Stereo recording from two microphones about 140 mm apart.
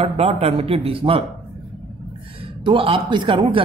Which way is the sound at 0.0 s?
45° right (ahead or behind).